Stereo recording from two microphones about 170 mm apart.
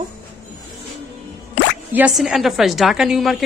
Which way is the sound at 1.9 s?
5° right (ahead or behind).